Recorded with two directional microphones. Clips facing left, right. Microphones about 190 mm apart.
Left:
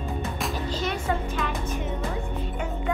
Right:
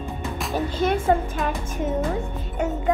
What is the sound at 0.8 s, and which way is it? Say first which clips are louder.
Music: right 9 dB; 50° right (ahead or behind).